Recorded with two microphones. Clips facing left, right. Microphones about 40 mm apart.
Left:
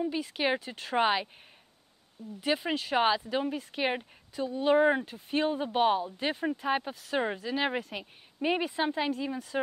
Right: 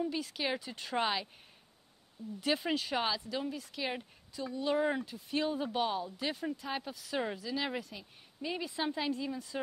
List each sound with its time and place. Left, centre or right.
0.0 s speech: centre
1.0 s speech: left
2.4 s speech: centre
3.0 s speech: left
7.9 s a woman's voice: left
8.6 s speech: left